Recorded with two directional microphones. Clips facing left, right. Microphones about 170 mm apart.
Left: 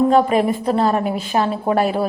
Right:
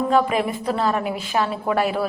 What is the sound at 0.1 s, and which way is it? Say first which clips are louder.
A woman's voice: left 4 dB; 35° left (ahead or behind).